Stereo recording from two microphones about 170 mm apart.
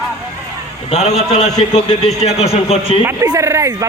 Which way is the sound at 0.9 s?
40° left (ahead or behind).